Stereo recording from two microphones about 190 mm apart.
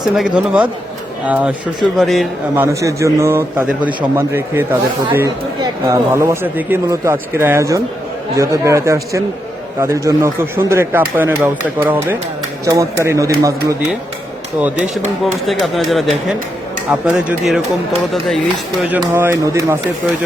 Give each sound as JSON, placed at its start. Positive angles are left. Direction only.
{"t": 0.0, "sound": "speech", "side_deg": -5}
{"t": 2.6, "sound": "speech", "side_deg": -15}
{"t": 15.2, "sound": "speech", "side_deg": 0}
{"t": 18.9, "sound": "speech", "side_deg": -10}